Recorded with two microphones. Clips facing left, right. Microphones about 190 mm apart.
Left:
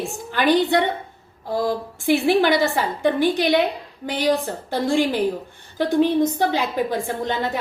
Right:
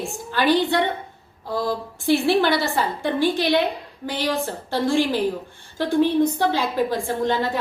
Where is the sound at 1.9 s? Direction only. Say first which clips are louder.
Left 1 dB; 15° left (ahead or behind).